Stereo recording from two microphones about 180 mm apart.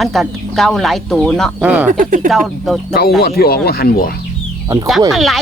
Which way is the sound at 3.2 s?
60° left (ahead or behind).